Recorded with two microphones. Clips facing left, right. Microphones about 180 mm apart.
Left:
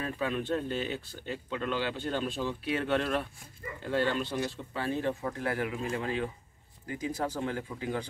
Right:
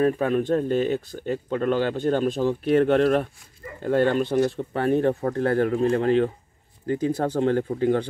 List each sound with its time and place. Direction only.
0.0 s speech: 45° right (ahead or behind)